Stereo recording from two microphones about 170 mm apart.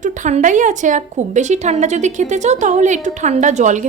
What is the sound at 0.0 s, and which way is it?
A woman's voice, 45° right (ahead or behind).